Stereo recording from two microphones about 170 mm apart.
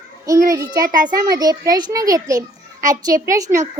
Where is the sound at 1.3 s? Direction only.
20° right (ahead or behind).